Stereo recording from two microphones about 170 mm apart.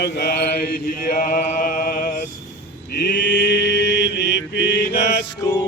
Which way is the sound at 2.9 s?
85° left.